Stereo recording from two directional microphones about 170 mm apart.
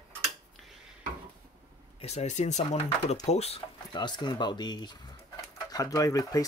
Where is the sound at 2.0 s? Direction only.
40° left (ahead or behind); by 6.4 s 20° left (ahead or behind).